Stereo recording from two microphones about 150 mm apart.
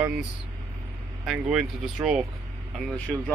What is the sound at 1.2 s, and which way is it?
A man's voice, 5° right (ahead or behind).